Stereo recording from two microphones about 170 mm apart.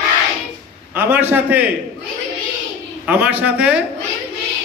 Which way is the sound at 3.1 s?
10° right (ahead or behind).